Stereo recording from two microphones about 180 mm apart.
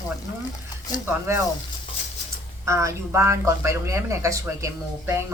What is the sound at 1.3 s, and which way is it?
Speech, 15° right (ahead or behind).